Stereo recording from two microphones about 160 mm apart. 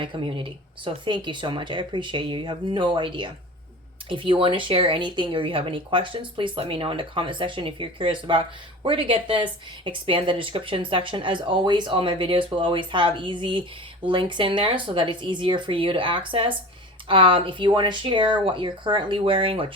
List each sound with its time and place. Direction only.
0.0 s speech: 30° right (ahead or behind)